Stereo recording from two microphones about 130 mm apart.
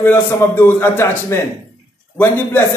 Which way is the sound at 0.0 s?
15° left (ahead or behind).